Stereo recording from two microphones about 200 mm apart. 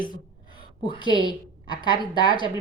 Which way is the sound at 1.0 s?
25° right (ahead or behind).